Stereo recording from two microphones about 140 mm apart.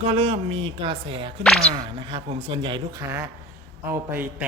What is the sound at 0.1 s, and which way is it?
Speech, 45° right (ahead or behind).